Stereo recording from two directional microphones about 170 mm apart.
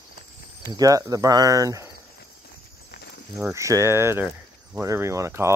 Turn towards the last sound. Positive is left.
turn(degrees=-15)  # may be behind; listen again after turning